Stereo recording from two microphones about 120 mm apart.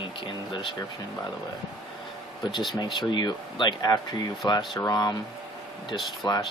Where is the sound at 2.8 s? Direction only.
40° left (ahead or behind).